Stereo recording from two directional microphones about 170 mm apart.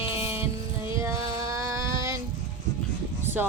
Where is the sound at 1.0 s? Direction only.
20° right (ahead or behind).